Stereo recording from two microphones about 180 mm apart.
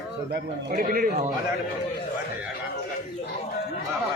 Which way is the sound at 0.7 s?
50° right (ahead or behind).